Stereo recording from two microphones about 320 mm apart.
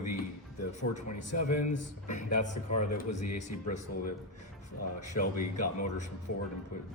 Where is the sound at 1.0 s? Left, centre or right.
Left.